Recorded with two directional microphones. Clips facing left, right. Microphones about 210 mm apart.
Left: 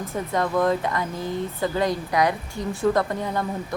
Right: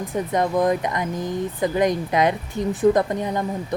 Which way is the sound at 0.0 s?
15° right (ahead or behind).